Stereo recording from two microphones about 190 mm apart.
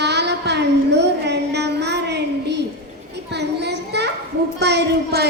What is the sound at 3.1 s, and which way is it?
Children playing, 60° right (ahead or behind).